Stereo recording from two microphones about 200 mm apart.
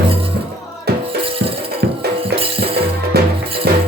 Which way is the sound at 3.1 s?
55° right (ahead or behind).